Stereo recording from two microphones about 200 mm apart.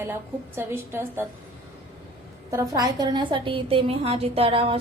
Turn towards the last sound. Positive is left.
turn(degrees=-30)  # may be behind; listen again after turning